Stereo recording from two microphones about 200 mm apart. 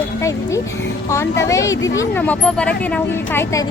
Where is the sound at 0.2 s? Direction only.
15° left (ahead or behind).